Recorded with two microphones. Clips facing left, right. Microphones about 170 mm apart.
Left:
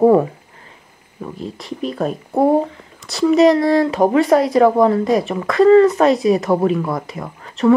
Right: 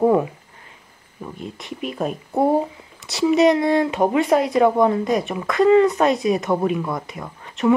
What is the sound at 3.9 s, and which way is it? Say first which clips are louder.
Speech: left 4 dB; 35° left (ahead or behind).